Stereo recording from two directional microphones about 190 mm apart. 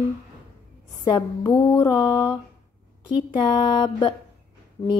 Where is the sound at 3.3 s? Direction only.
25° left (ahead or behind).